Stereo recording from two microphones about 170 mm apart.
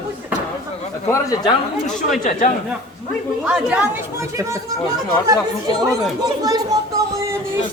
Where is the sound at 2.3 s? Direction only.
50° left (ahead or behind).